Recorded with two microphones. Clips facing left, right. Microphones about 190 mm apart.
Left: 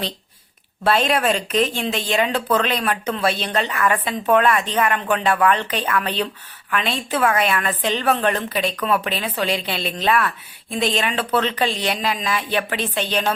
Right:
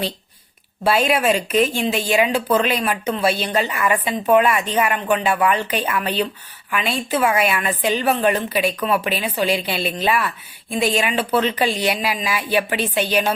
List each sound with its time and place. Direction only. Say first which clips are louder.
0.9 s a woman's voice: right 1 dB; 5° right (ahead or behind)